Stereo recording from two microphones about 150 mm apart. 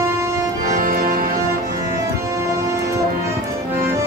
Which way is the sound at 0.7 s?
65° right (ahead or behind).